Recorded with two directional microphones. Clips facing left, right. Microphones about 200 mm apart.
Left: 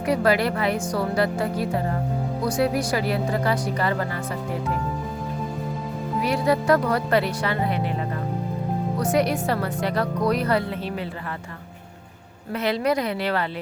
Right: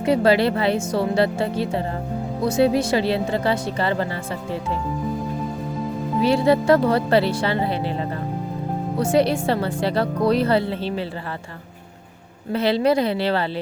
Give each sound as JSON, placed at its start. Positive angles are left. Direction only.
{"t": 0.0, "sound": "speech", "side_deg": -25}
{"t": 6.2, "sound": "speech", "side_deg": -30}
{"t": 9.0, "sound": "speech", "side_deg": -30}
{"t": 12.5, "sound": "speech", "side_deg": -30}